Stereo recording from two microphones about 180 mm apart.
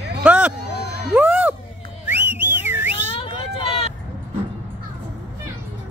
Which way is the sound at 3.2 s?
30° left (ahead or behind).